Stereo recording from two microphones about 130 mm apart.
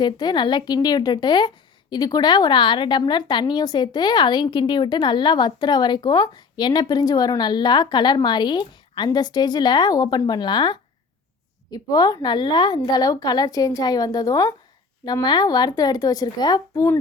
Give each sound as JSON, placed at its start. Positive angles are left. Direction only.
{"t": 0.0, "sound": "a woman's voice", "side_deg": 35}